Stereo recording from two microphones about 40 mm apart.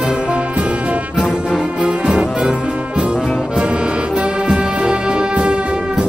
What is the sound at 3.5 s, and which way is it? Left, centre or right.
Music, right.